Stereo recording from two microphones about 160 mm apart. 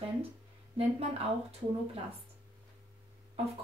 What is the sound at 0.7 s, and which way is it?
Speech, 40° right (ahead or behind).